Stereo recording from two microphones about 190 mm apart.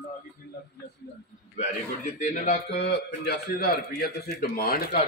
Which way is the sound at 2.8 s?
60° left (ahead or behind).